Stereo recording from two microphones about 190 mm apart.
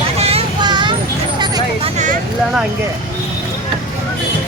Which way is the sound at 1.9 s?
40° right (ahead or behind).